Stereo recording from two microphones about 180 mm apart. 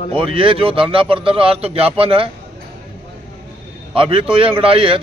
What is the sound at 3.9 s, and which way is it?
Speech, 30° right (ahead or behind).